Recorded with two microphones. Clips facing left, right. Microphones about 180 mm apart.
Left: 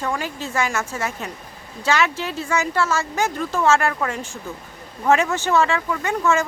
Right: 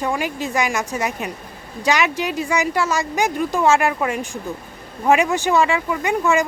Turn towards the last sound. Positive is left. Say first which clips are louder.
# right 2 dB
turn(degrees=-15)  # may be behind; listen again after turning